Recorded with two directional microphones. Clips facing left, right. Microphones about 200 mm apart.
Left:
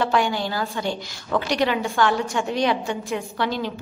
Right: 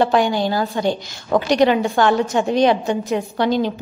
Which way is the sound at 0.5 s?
40° right (ahead or behind).